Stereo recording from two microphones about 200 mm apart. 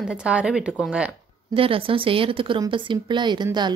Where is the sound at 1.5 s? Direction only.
25° right (ahead or behind).